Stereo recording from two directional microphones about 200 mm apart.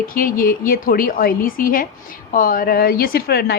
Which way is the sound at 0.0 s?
45° left (ahead or behind).